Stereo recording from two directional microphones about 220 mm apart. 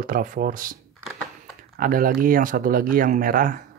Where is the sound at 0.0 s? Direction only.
40° right (ahead or behind).